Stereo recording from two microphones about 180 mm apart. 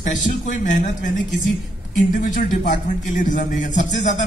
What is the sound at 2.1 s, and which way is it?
A man's voice, 45° left (ahead or behind).